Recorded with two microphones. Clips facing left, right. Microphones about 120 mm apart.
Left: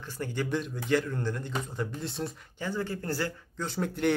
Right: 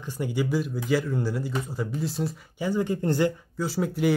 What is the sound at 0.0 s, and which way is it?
Speech, 15° right (ahead or behind).